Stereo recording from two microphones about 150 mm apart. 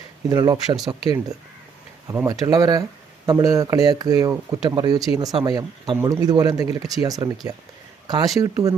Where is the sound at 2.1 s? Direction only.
20° right (ahead or behind).